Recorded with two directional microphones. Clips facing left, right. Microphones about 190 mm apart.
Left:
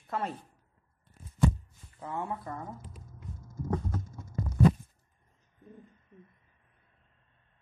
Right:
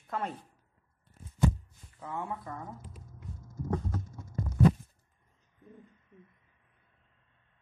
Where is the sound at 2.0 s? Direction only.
35° left (ahead or behind).